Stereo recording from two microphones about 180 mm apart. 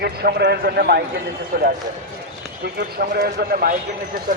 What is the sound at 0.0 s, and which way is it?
A man's voice, 60° right (ahead or behind).